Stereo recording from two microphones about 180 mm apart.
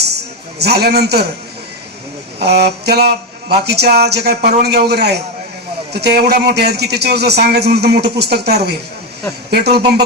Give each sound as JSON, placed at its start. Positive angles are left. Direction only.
{"t": 0.6, "sound": "a man's voice", "side_deg": -65}
{"t": 2.4, "sound": "a man's voice", "side_deg": -65}